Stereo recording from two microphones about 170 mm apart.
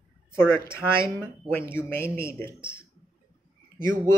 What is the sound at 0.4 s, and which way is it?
Speech, 15° left (ahead or behind).